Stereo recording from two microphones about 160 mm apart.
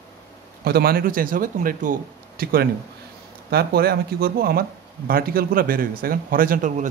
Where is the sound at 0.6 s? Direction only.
70° right (ahead or behind).